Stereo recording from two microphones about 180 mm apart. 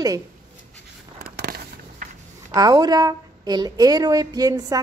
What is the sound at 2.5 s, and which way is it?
A woman's voice, 20° right (ahead or behind).